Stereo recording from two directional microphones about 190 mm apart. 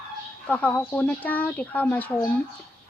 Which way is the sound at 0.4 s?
10° left (ahead or behind).